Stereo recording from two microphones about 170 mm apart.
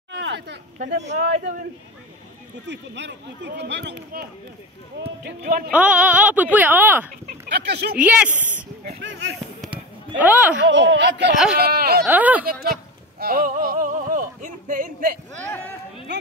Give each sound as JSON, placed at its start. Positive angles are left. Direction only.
{"t": 0.1, "sound": "a sound", "side_deg": -80}
{"t": 1.0, "sound": "speech", "side_deg": -40}
{"t": 2.7, "sound": "speech", "side_deg": -90}
{"t": 5.2, "sound": "speech", "side_deg": -60}
{"t": 5.7, "sound": "speech", "side_deg": -10}
{"t": 7.4, "sound": "speech", "side_deg": -75}
{"t": 8.0, "sound": "speech", "side_deg": -10}
{"t": 8.8, "sound": "speech", "side_deg": -85}
{"t": 10.1, "sound": "speech", "side_deg": -10}
{"t": 10.7, "sound": "speech", "side_deg": -90}
{"t": 11.5, "sound": "speech", "side_deg": -65}
{"t": 12.0, "sound": "speech", "side_deg": -10}
{"t": 13.2, "sound": "a sound", "side_deg": -55}